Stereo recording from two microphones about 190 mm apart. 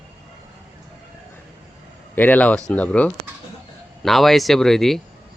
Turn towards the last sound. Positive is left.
turn(degrees=0)  # may be behind; listen again after turning